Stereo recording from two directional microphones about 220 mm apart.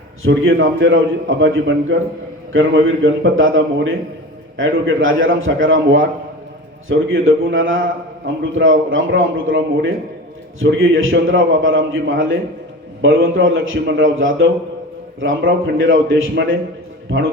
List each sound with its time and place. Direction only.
0.2 s a man's voice: 60° right (ahead or behind)